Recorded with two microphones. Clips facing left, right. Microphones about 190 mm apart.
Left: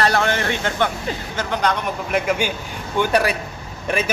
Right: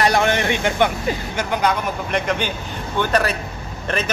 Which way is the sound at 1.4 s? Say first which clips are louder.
Even; 10° right (ahead or behind).